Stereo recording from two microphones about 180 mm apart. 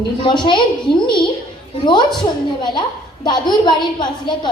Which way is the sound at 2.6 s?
25° left (ahead or behind).